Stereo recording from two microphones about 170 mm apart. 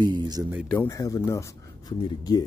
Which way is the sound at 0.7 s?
15° left (ahead or behind).